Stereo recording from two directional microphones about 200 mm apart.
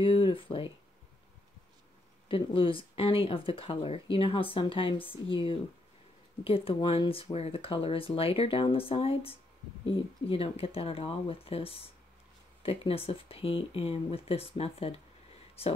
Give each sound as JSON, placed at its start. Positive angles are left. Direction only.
{"t": 0.0, "sound": "speech", "side_deg": 25}
{"t": 2.2, "sound": "speech", "side_deg": 25}